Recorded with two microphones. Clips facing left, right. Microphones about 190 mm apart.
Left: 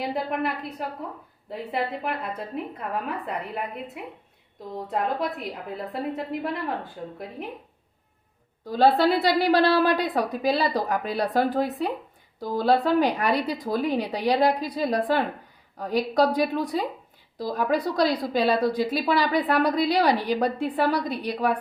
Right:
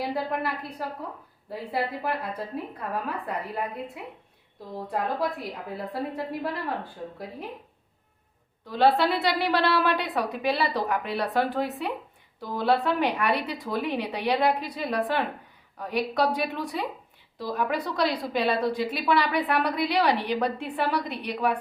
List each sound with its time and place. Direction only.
0.0 s a woman's voice: 20° left (ahead or behind)
5.4 s a woman's voice: 20° left (ahead or behind)
8.6 s a woman's voice: 40° left (ahead or behind)